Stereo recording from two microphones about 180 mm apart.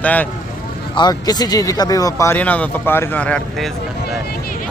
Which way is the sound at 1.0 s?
20° left (ahead or behind).